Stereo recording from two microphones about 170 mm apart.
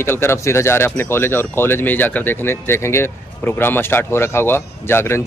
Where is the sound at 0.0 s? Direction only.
15° left (ahead or behind).